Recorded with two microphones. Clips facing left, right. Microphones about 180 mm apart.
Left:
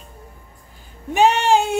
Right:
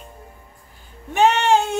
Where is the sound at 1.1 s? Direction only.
10° left (ahead or behind).